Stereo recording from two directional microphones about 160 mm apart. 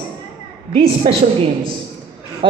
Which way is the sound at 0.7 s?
35° right (ahead or behind).